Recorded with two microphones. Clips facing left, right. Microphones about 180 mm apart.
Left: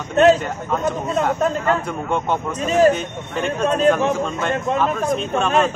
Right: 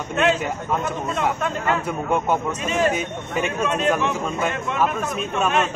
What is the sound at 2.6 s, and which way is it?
Speech, 40° left (ahead or behind).